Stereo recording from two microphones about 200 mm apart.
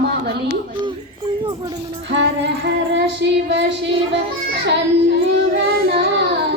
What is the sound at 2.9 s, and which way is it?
Child singing, 60° right (ahead or behind).